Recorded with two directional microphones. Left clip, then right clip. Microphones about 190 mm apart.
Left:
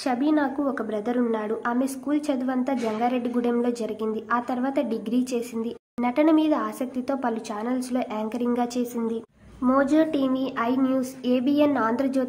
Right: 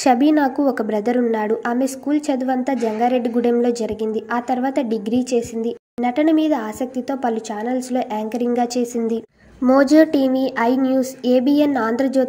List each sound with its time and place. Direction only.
0.0 s a woman's voice: 30° right (ahead or behind)
9.0 s a sound: 25° right (ahead or behind)
9.8 s a woman's voice: 25° right (ahead or behind)